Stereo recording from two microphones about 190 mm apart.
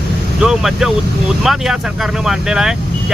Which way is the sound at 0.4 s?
Centre (ahead or behind).